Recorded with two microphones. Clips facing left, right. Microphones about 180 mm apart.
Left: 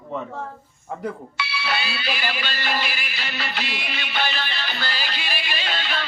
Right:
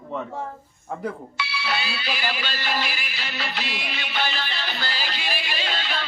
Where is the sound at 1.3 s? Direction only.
65° left (ahead or behind).